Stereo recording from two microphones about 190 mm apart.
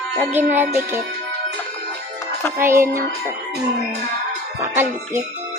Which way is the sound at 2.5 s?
15° right (ahead or behind).